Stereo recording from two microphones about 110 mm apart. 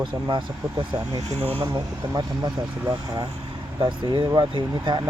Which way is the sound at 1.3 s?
70° right (ahead or behind).